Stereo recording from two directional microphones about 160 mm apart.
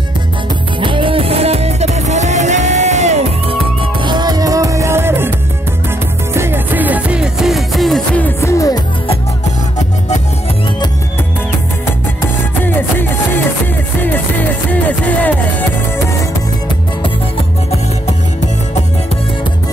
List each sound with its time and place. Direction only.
0.7 s music: 30° right (ahead or behind); by 3.5 s 45° right (ahead or behind)
3.8 s music: 30° right (ahead or behind)
6.3 s music: 15° right (ahead or behind); by 8.8 s 20° left (ahead or behind)
12.6 s music: 15° left (ahead or behind)